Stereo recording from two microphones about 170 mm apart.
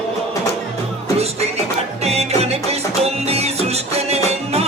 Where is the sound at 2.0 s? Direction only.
40° right (ahead or behind).